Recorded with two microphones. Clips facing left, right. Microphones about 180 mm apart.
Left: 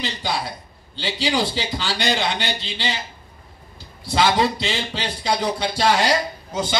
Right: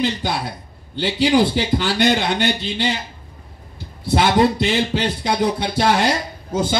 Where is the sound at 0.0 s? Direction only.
55° right (ahead or behind).